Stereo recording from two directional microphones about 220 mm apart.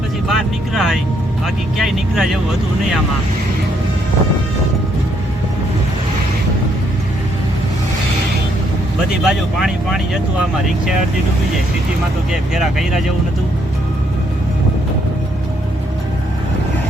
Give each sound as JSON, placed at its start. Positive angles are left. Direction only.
{"t": 0.3, "sound": "speech", "side_deg": 0}
{"t": 9.0, "sound": "speech", "side_deg": -5}
{"t": 12.3, "sound": "speech", "side_deg": 0}